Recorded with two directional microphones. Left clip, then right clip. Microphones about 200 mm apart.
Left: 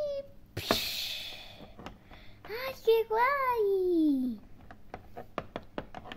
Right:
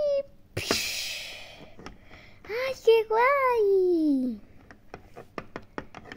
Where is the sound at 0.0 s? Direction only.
45° right (ahead or behind).